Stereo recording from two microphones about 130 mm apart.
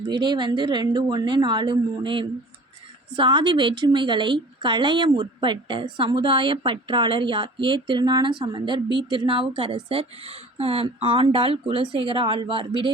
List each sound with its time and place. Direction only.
0.0 s a woman's voice: 35° right (ahead or behind)